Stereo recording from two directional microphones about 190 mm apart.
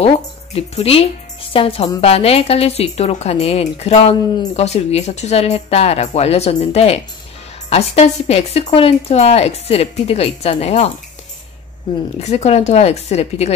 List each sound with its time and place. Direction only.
0.0 s speech: 30° left (ahead or behind)
12.2 s speech: 35° left (ahead or behind)